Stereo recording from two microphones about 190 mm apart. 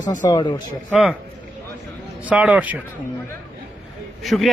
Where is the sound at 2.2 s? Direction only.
5° right (ahead or behind).